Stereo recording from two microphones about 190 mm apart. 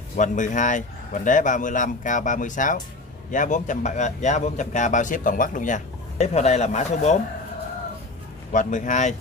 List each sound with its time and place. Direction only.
0.2 s speech: 40° left (ahead or behind)
8.5 s speech: 40° left (ahead or behind)